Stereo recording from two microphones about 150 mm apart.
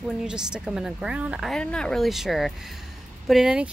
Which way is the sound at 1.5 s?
5° left (ahead or behind).